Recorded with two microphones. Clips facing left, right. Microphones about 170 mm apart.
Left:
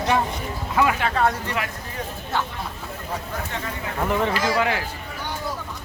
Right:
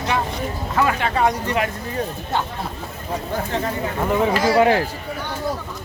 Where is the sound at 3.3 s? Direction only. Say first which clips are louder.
Right 7 dB; 35° right (ahead or behind).